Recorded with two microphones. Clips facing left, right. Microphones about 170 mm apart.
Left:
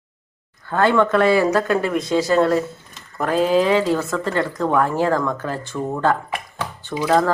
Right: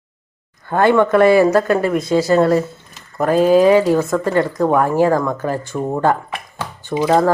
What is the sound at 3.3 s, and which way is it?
Speech, 45° right (ahead or behind).